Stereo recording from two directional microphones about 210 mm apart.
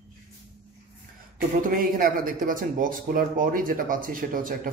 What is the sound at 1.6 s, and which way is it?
Speech, 40° right (ahead or behind).